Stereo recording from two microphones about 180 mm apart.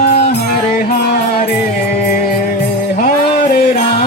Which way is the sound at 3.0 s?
50° left (ahead or behind).